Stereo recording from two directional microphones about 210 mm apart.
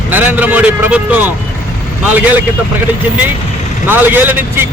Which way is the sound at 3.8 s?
10° right (ahead or behind).